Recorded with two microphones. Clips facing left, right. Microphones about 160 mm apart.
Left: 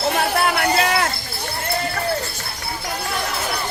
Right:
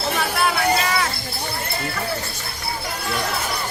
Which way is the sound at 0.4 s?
60° left (ahead or behind).